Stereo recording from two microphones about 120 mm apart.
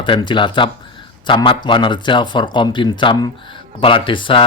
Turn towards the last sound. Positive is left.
turn(degrees=45)  # may be behind; listen again after turning